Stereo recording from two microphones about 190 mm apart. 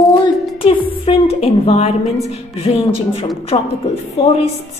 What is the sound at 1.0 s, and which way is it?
Speech, 30° left (ahead or behind).